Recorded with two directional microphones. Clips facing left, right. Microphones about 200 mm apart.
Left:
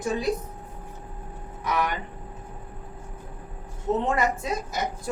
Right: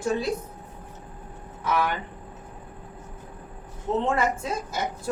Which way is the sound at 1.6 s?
15° left (ahead or behind).